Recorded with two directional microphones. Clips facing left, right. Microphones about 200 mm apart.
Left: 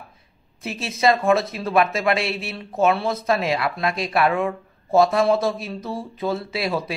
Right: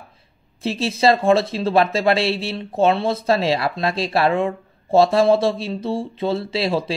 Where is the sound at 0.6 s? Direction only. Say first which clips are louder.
Right 5 dB; 30° right (ahead or behind).